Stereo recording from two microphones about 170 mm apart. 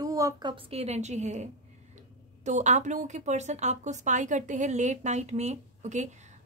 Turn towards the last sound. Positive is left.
turn(degrees=-45)  # may be behind; listen again after turning